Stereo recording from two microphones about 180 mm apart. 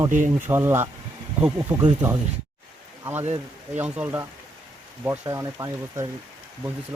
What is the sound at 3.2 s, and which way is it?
Speech, 40° right (ahead or behind).